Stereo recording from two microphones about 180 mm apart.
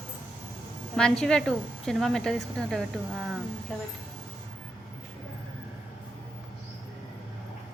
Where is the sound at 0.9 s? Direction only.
5° left (ahead or behind).